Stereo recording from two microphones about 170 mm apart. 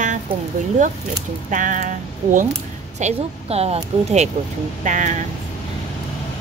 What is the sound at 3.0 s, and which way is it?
Speech, 35° right (ahead or behind).